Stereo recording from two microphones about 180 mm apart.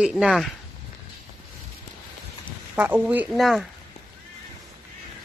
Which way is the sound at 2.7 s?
5° right (ahead or behind).